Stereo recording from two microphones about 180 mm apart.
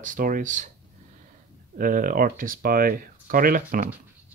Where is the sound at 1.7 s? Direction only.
50° right (ahead or behind).